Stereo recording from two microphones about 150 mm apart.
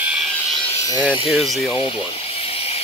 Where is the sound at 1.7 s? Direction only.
35° left (ahead or behind).